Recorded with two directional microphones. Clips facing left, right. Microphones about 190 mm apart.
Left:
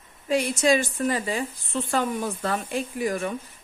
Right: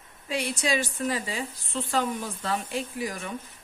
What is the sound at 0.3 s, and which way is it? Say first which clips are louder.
A woman's voice: left 7 dB; 45° left (ahead or behind).